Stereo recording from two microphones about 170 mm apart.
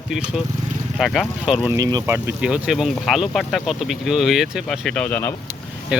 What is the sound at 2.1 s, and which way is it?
Speech, 10° right (ahead or behind).